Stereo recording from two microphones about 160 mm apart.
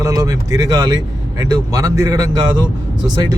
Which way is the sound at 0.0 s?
20° right (ahead or behind).